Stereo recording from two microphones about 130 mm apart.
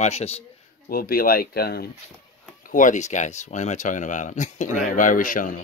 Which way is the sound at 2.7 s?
75° left (ahead or behind).